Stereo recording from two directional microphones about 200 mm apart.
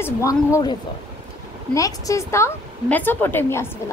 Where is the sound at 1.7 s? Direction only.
15° left (ahead or behind).